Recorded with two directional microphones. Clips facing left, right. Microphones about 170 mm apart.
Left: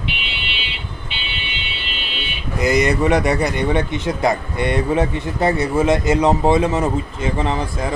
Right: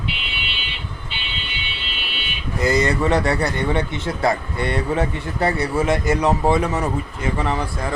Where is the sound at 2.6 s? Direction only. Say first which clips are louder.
Left 2 dB; 15° left (ahead or behind).